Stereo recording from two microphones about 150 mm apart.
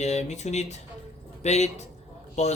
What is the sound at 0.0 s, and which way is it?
A man's voice, 50° left (ahead or behind).